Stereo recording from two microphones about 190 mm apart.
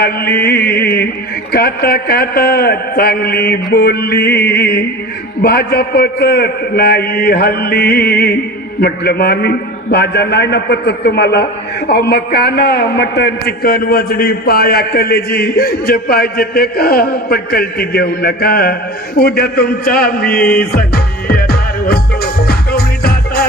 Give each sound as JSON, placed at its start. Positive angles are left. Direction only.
{"t": 0.0, "sound": "a man's voice", "side_deg": 60}